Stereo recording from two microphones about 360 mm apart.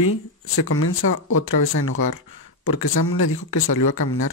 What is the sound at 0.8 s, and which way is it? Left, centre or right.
Speech, left.